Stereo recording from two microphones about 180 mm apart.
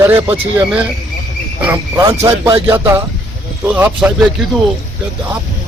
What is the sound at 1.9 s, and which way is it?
A man's voice, 15° right (ahead or behind).